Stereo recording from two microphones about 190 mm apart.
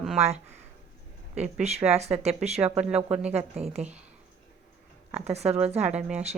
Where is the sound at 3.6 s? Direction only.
35° right (ahead or behind).